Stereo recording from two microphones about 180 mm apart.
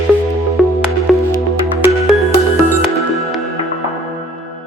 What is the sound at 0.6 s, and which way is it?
Music, centre (ahead or behind).